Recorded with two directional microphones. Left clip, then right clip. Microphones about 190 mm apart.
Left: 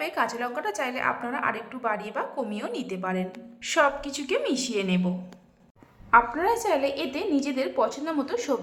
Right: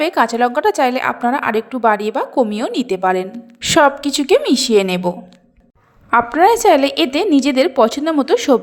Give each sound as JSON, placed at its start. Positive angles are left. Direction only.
{"t": 0.0, "sound": "a woman's voice", "side_deg": -40}